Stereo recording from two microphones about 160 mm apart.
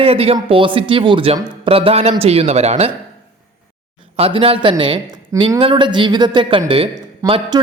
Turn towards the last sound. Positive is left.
turn(degrees=-30)  # may be behind; listen again after turning